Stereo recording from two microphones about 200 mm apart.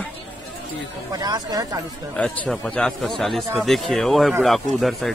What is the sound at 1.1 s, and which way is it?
Speech, 20° right (ahead or behind).